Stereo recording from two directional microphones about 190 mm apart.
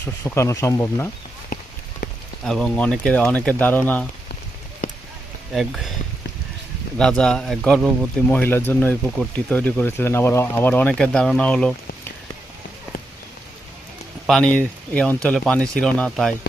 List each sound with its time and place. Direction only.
0.0 s speech: 15° left (ahead or behind)
1.5 s clip-clop: 45° left (ahead or behind)
2.4 s speech: 5° left (ahead or behind)
5.5 s speech: centre (ahead or behind)
7.0 s speech: 5° left (ahead or behind)
14.3 s speech: 5° left (ahead or behind)